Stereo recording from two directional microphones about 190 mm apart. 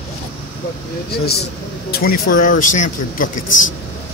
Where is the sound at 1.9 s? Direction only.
50° left (ahead or behind).